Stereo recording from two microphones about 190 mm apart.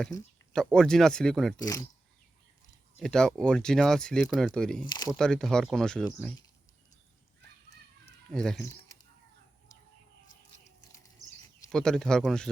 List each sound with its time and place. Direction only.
0.5 s speech: 5° left (ahead or behind)
1.5 s speech: 20° left (ahead or behind)
3.0 s speech: 5° left (ahead or behind)
4.9 s speech: 20° left (ahead or behind)
5.1 s speech: 5° left (ahead or behind)
8.3 s speech: 5° left (ahead or behind)
11.7 s speech: 5° left (ahead or behind)